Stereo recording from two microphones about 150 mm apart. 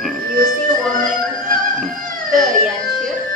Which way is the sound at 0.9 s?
65° right (ahead or behind).